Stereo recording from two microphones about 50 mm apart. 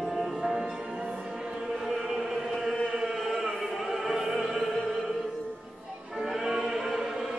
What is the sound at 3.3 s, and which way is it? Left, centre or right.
Opera, centre.